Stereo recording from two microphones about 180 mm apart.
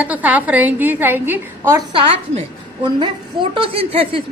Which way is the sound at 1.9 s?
30° right (ahead or behind).